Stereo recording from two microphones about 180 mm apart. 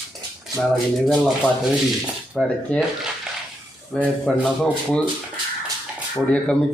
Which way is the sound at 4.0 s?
Centre (ahead or behind).